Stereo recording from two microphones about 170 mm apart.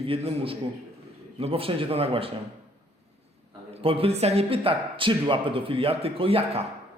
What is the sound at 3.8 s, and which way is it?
A man's voice, 35° right (ahead or behind).